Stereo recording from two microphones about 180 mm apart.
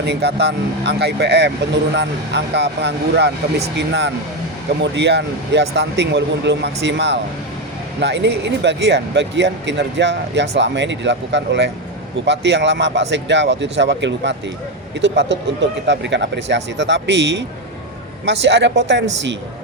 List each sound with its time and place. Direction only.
0.0 s speech: 70° right (ahead or behind)